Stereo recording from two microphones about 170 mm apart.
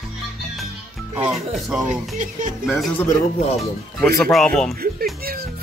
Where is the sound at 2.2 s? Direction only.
50° right (ahead or behind).